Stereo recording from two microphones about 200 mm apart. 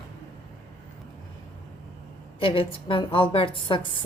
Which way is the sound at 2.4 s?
25° left (ahead or behind).